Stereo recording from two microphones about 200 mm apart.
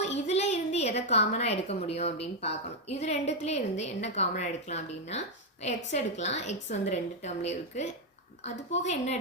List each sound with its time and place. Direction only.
0.0 s a woman's voice: 35° left (ahead or behind)